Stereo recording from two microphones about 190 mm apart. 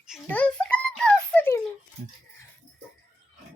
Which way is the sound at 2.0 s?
35° right (ahead or behind).